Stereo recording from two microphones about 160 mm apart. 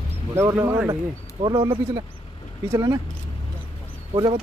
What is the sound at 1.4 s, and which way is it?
Speech, 30° right (ahead or behind).